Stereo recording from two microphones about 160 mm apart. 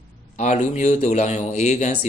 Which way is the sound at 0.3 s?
45° left (ahead or behind).